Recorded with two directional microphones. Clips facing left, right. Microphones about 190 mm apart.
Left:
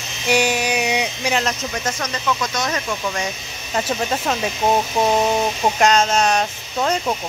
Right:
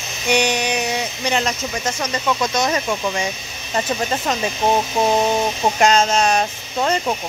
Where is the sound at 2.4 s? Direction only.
20° right (ahead or behind).